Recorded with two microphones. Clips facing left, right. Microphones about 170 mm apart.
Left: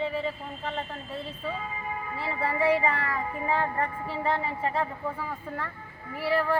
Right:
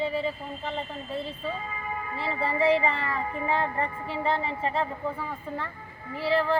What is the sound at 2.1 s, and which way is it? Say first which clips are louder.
Speech: right 1 dB; 30° right (ahead or behind).